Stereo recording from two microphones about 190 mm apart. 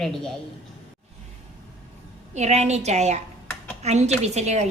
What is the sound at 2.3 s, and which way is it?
A woman's voice, 35° right (ahead or behind).